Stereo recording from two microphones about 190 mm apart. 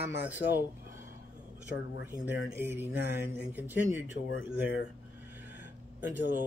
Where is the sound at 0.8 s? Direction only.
45° right (ahead or behind).